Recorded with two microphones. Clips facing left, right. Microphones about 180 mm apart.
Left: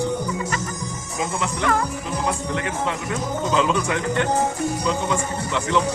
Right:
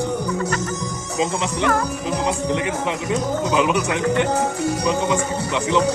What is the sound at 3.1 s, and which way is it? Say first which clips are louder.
Speech: right 5 dB; 15° right (ahead or behind).